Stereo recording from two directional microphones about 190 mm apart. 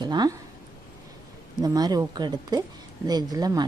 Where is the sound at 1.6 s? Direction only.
20° right (ahead or behind).